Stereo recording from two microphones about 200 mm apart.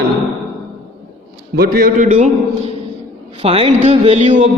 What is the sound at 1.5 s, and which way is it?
Speech, 45° right (ahead or behind).